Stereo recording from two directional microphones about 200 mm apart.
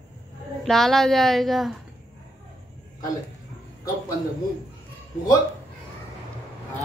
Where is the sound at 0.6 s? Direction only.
Centre (ahead or behind).